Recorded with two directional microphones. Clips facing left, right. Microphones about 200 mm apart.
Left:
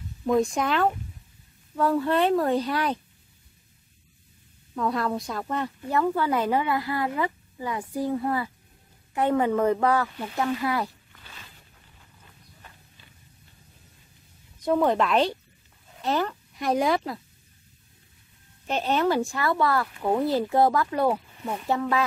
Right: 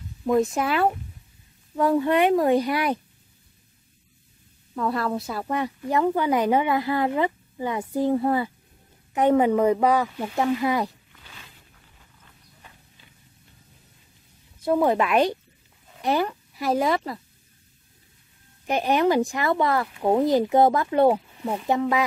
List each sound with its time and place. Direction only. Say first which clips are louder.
0.2 s speech: right 1 dB; 5° right (ahead or behind)
4.7 s speech: right 1 dB; centre (ahead or behind); by 10.9 s 20° right (ahead or behind)
14.6 s speech: right 1 dB; 10° right (ahead or behind)
18.7 s speech: right 3 dB; 15° right (ahead or behind)